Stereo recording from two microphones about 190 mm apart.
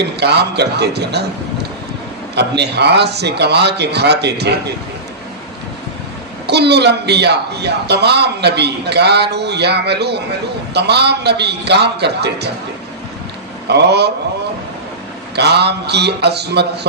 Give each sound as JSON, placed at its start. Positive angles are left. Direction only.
{"t": 0.0, "sound": "a man's voice", "side_deg": -60}
{"t": 2.3, "sound": "a man's voice", "side_deg": -60}
{"t": 6.5, "sound": "a man's voice", "side_deg": -60}
{"t": 13.7, "sound": "a man's voice", "side_deg": -60}
{"t": 15.4, "sound": "a man's voice", "side_deg": -60}